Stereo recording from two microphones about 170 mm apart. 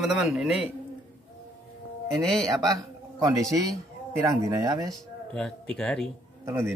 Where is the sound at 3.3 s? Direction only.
20° right (ahead or behind).